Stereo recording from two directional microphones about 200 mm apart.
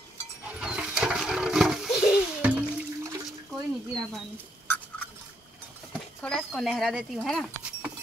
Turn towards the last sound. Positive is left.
turn(degrees=0)  # may be behind; listen again after turning